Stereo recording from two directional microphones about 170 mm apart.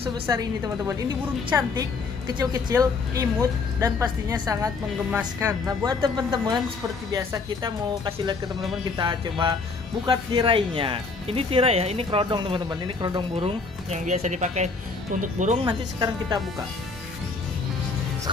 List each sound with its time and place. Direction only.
0.3 s a woman's voice: 20° right (ahead or behind)
13.8 s speech: 45° right (ahead or behind)
15.6 s a woman's voice: 25° right (ahead or behind)